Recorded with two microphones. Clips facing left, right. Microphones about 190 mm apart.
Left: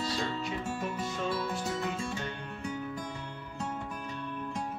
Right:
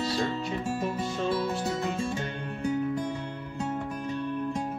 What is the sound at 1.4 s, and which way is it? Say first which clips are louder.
Music: right 4 dB; 25° right (ahead or behind).